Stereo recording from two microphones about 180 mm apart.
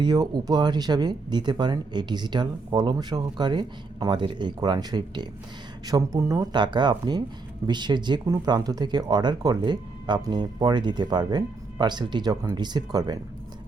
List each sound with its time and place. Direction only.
0.0 s speech: 20° right (ahead or behind)